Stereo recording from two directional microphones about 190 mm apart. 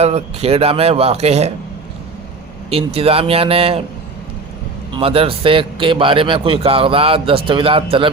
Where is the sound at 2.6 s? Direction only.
30° right (ahead or behind).